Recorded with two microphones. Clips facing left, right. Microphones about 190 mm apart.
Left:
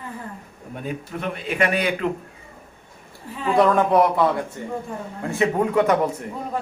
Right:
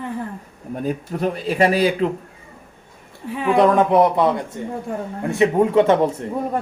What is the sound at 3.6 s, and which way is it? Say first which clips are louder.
Speech: right 2 dB; 20° right (ahead or behind).